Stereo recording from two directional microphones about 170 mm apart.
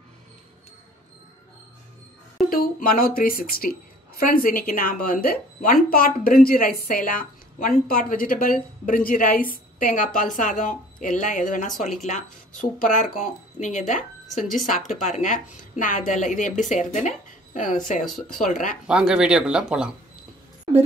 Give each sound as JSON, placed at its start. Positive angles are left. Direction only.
{"t": 2.5, "sound": "a woman's voice", "side_deg": 60}
{"t": 18.0, "sound": "speech", "side_deg": 0}
{"t": 18.4, "sound": "a woman's voice", "side_deg": 50}
{"t": 18.9, "sound": "speech", "side_deg": -5}